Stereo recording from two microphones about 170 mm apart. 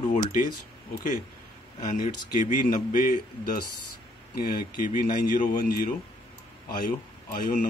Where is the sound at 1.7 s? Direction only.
45° left (ahead or behind).